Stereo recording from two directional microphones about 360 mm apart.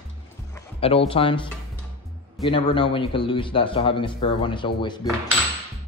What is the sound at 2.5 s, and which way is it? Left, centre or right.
A man's voice, centre.